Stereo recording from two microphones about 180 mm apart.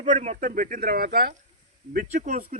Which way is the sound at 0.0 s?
40° right (ahead or behind).